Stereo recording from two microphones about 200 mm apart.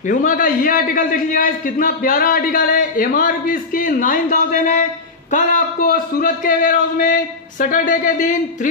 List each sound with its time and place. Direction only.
0.1 s a man's voice: 40° left (ahead or behind)